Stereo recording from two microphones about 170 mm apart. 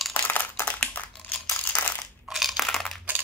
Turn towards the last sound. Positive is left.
turn(degrees=0)  # may be behind; listen again after turning